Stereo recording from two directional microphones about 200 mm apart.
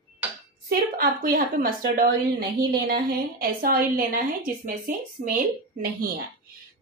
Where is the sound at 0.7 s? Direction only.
45° right (ahead or behind).